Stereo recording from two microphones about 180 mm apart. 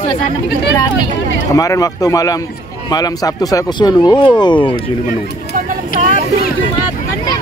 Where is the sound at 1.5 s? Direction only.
20° left (ahead or behind).